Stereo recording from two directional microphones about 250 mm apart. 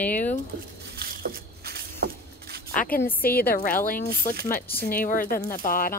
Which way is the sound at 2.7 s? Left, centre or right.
Left.